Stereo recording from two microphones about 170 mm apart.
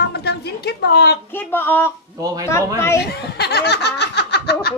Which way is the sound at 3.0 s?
75° left (ahead or behind).